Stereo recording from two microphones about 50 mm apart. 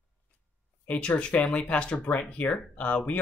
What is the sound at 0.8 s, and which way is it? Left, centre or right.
Speech, left.